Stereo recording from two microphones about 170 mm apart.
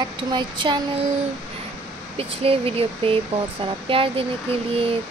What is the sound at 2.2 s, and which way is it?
Speech, 35° right (ahead or behind).